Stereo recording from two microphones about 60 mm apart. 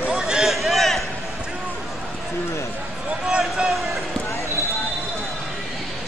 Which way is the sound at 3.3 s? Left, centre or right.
Centre.